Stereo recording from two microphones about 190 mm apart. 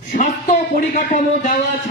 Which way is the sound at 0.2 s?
40° left (ahead or behind).